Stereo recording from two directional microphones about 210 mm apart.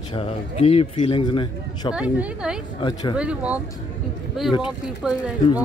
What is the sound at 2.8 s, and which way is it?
Speech, 20° left (ahead or behind).